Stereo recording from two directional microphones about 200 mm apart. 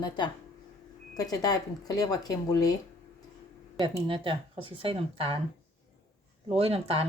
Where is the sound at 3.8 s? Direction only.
25° right (ahead or behind).